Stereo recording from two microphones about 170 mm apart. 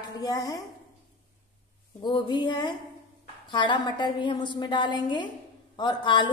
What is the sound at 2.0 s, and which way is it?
A woman's voice, 25° left (ahead or behind).